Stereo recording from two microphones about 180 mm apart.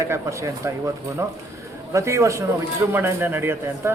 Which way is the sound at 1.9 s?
15° right (ahead or behind).